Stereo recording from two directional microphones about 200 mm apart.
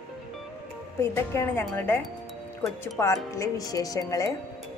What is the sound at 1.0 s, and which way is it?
Speech, 10° left (ahead or behind).